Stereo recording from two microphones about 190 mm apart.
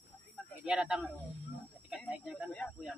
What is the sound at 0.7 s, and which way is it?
Speech, 5° right (ahead or behind).